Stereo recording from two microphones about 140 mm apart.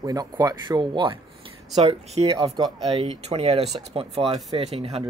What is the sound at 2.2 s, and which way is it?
Speech, 30° right (ahead or behind).